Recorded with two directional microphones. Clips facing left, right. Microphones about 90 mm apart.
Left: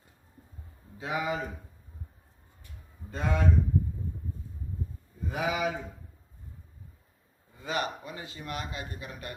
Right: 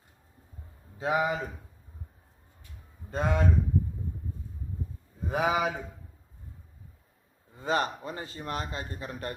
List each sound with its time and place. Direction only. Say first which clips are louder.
0.9 s speech: right 4 dB; 25° right (ahead or behind)
3.1 s a man's voice: right 3 dB; 30° right (ahead or behind)
5.3 s a man's voice: right 3 dB; 30° right (ahead or behind)
7.6 s a man's voice: right 4 dB; 35° right (ahead or behind)